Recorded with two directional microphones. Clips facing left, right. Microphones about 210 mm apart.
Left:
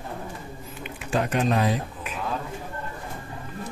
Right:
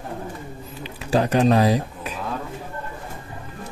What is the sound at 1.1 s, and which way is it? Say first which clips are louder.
Speech: right 6 dB; 35° right (ahead or behind).